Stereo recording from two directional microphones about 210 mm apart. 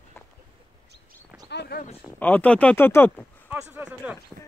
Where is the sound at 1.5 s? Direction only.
50° left (ahead or behind).